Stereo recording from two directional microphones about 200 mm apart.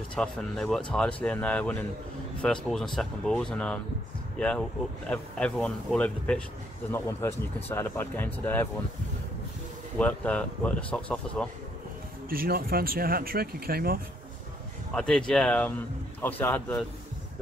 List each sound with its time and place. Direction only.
0.1 s speech: 5° left (ahead or behind)
9.9 s speech: 5° left (ahead or behind)
12.3 s speech: 45° right (ahead or behind)
15.0 s speech: 5° left (ahead or behind)